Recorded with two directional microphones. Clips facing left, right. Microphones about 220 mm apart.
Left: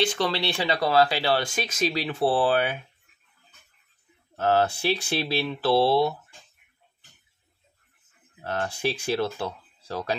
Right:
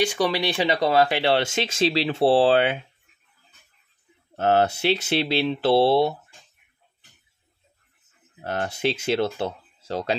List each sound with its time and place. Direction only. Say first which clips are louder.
0.0 s speech: right 3 dB; 15° right (ahead or behind)
4.4 s speech: right 2 dB; 20° right (ahead or behind)
8.4 s speech: right 2 dB; 25° right (ahead or behind)